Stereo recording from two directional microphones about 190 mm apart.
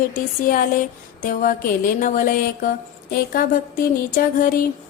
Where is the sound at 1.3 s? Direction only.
45° left (ahead or behind).